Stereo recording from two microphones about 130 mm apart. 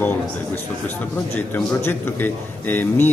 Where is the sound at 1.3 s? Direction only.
15° left (ahead or behind).